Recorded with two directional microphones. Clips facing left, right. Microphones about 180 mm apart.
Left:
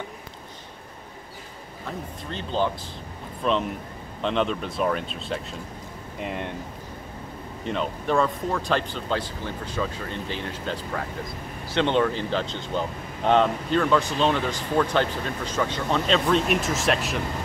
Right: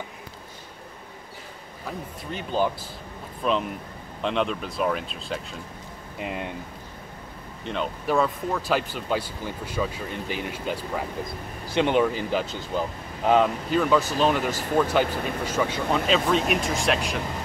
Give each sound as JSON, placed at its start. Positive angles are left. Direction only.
{"t": 1.9, "sound": "speech", "side_deg": -10}
{"t": 7.6, "sound": "speech", "side_deg": 0}